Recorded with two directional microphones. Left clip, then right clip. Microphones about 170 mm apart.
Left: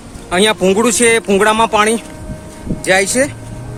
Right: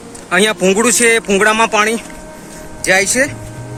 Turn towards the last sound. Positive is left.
turn(degrees=20)  # may be behind; listen again after turning